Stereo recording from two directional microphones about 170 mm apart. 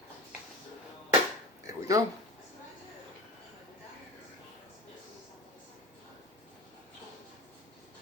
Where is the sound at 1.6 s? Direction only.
20° right (ahead or behind).